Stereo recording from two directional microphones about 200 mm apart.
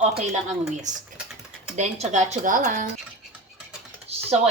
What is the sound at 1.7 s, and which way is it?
Speech, 35° right (ahead or behind).